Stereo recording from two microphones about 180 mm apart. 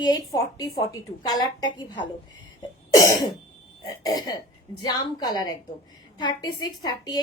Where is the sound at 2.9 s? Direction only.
20° left (ahead or behind).